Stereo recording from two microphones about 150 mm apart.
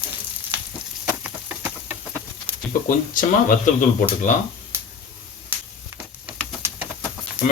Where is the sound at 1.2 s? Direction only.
15° right (ahead or behind).